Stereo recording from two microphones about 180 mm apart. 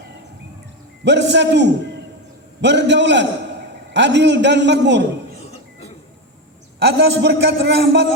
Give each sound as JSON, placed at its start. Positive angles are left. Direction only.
{"t": 1.0, "sound": "a man's voice", "side_deg": -75}
{"t": 6.7, "sound": "a man's voice", "side_deg": -70}